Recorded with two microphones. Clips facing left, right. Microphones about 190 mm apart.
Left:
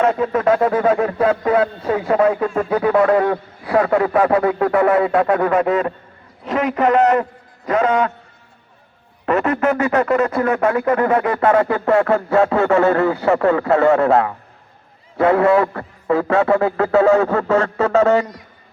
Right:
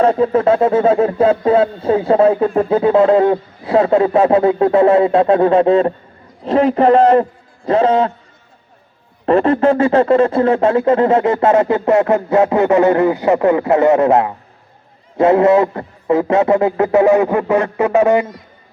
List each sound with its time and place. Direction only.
0.0 s a man's voice: 30° right (ahead or behind)
9.2 s speech: 30° right (ahead or behind); by 18.3 s 15° right (ahead or behind)